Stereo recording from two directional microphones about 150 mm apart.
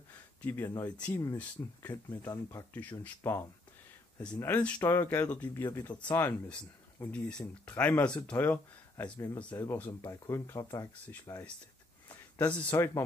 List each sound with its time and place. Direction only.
0.4 s speech: 15° left (ahead or behind)
12.4 s speech: 10° left (ahead or behind)